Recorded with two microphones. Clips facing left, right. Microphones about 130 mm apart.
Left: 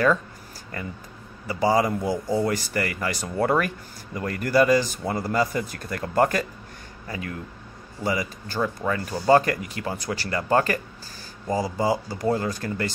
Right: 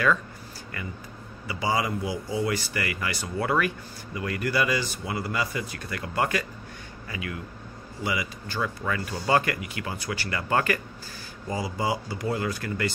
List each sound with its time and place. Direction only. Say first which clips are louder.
1.5 s speech: left 6 dB; 40° left (ahead or behind)
8.5 s speech: left 4 dB; 30° left (ahead or behind)